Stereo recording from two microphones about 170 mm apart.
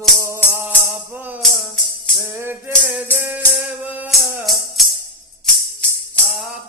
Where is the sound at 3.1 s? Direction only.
10° right (ahead or behind).